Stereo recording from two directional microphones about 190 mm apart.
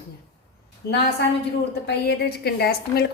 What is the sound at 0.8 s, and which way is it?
A woman's voice, 60° left (ahead or behind).